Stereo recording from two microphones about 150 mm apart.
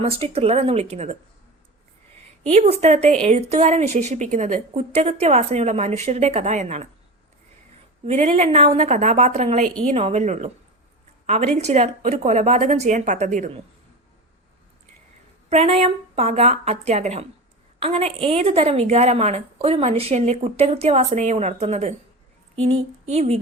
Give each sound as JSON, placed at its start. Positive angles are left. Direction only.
{"t": 0.0, "sound": "speech", "side_deg": -40}
{"t": 2.5, "sound": "speech", "side_deg": -45}
{"t": 8.0, "sound": "speech", "side_deg": -45}
{"t": 15.4, "sound": "speech", "side_deg": -45}